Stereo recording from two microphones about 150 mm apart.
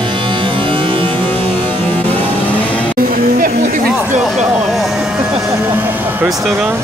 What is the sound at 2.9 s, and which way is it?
Music, 70° right (ahead or behind).